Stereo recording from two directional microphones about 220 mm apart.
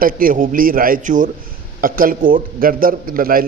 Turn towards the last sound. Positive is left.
turn(degrees=-40)  # may be behind; listen again after turning